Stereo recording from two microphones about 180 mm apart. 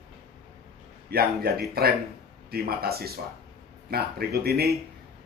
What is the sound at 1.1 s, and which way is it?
Speech, 60° right (ahead or behind).